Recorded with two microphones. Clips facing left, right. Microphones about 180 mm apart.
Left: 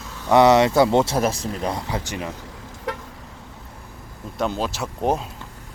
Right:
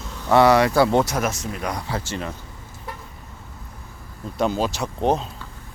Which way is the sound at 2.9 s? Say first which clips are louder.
Left 7 dB; 90° left.